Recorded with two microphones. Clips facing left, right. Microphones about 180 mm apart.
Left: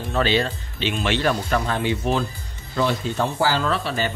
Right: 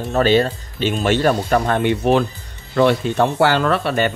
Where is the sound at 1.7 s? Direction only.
60° right (ahead or behind).